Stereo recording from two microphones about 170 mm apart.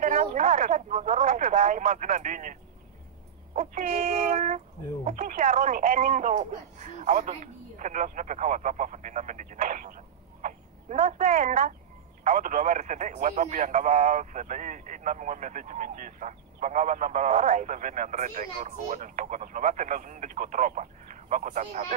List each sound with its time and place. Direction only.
0.0 s speech: 45° right (ahead or behind)
3.5 s speech: 55° right (ahead or behind)